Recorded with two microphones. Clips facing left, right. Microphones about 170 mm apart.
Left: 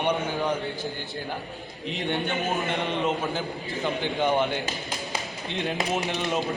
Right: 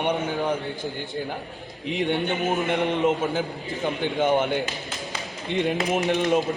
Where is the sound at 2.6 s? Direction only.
15° right (ahead or behind).